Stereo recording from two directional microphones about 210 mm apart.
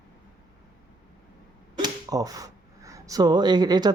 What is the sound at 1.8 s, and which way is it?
Speech, 15° right (ahead or behind).